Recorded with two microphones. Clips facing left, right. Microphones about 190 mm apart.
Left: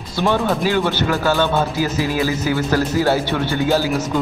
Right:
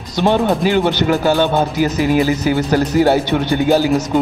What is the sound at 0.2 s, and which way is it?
Speech, 20° right (ahead or behind).